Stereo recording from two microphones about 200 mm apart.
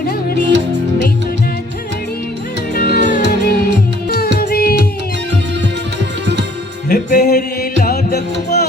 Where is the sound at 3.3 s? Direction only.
50° left (ahead or behind).